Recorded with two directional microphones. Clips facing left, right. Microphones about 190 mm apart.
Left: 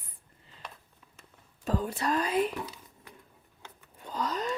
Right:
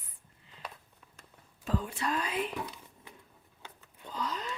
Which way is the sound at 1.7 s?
40° left (ahead or behind).